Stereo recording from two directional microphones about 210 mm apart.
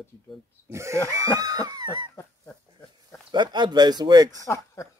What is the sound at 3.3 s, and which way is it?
Speech, 20° right (ahead or behind).